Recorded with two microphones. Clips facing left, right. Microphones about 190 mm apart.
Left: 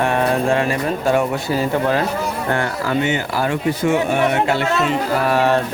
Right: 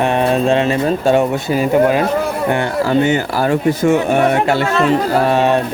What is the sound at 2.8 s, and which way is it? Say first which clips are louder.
Speech: right 5 dB; 35° right (ahead or behind).